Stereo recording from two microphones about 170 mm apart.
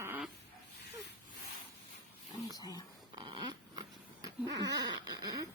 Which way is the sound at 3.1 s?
25° right (ahead or behind).